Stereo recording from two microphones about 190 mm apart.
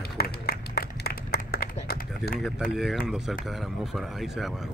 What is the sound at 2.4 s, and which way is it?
Speech, centre (ahead or behind).